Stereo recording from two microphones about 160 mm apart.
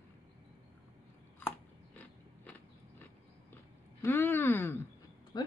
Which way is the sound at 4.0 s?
15° left (ahead or behind).